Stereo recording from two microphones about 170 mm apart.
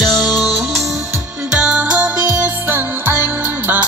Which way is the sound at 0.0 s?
Centre (ahead or behind).